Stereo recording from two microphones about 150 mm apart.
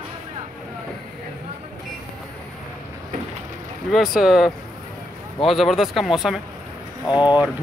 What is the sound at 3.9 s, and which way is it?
Speech, centre (ahead or behind).